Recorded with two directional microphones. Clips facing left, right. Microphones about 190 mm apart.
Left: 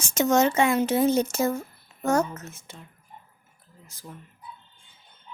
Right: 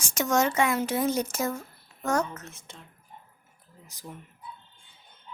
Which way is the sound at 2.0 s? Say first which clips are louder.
Left 4 dB; 25° left (ahead or behind).